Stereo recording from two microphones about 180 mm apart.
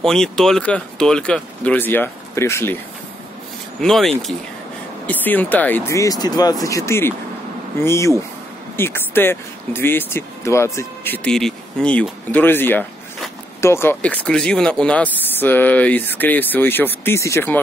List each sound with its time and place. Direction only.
0.0 s speech: 5° left (ahead or behind)
3.8 s speech: centre (ahead or behind)